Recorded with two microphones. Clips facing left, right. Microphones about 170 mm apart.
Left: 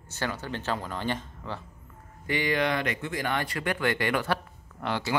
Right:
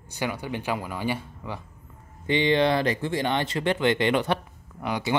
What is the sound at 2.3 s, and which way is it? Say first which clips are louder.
Speech: right 5 dB; 25° right (ahead or behind).